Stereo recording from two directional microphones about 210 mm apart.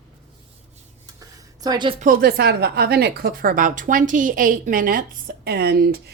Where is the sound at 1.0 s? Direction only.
15° right (ahead or behind).